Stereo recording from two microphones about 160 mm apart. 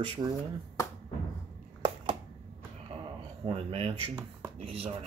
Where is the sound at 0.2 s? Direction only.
25° right (ahead or behind).